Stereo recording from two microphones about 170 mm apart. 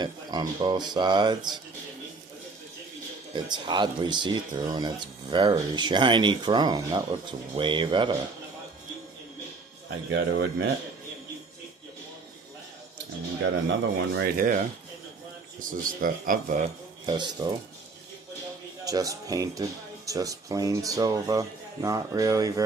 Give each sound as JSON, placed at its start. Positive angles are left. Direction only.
{"t": 0.0, "sound": "speech", "side_deg": -25}
{"t": 3.3, "sound": "speech", "side_deg": -25}
{"t": 10.1, "sound": "speech", "side_deg": -80}
{"t": 13.4, "sound": "speech", "side_deg": -80}
{"t": 16.0, "sound": "speech", "side_deg": -55}
{"t": 17.1, "sound": "speech", "side_deg": -25}
{"t": 18.9, "sound": "speech", "side_deg": -20}